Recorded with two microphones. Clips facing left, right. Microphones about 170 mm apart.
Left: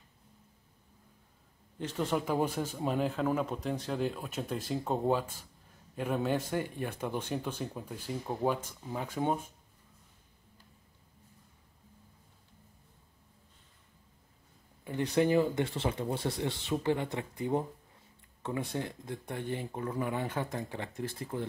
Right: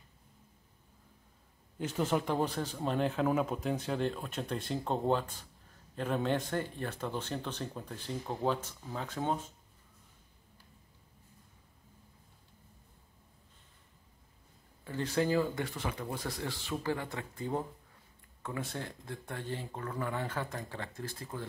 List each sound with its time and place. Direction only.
1.8 s speech: 5° right (ahead or behind); by 9.5 s 10° left (ahead or behind)
14.9 s speech: 20° left (ahead or behind)